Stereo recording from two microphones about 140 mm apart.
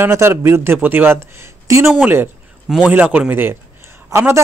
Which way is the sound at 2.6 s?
5° right (ahead or behind).